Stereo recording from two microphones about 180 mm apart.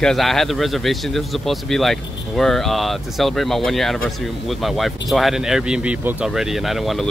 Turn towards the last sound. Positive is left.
turn(degrees=0)  # may be behind; listen again after turning